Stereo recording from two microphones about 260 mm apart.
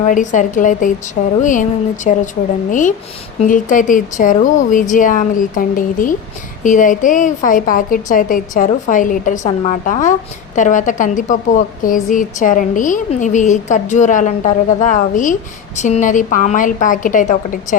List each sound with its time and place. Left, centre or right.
0.0 s a woman's voice: left